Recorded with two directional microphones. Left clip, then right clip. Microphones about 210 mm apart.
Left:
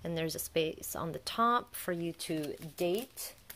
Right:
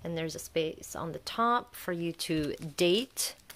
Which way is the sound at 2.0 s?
15° right (ahead or behind).